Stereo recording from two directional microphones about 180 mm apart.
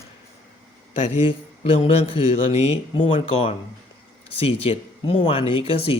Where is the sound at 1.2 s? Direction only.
30° left (ahead or behind).